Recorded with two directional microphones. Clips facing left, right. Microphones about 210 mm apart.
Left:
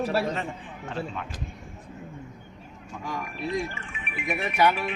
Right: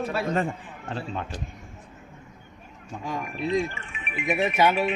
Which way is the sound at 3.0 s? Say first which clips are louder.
Right 3 dB; 20° right (ahead or behind).